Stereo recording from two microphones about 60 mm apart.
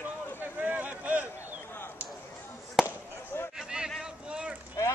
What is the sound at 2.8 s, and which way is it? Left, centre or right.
Fireworks, left.